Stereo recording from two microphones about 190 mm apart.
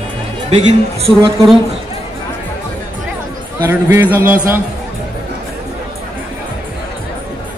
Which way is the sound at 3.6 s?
10° right (ahead or behind).